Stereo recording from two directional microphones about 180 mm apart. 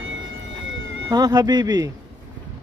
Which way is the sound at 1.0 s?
20° right (ahead or behind).